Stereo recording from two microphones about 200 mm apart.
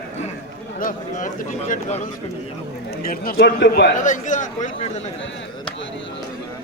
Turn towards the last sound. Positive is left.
turn(degrees=40)  # may be behind; listen again after turning